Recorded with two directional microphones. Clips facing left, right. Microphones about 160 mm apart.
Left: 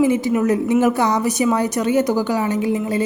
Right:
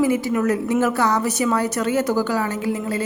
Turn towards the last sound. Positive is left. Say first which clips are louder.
# left 4 dB
turn(degrees=15)  # may be behind; listen again after turning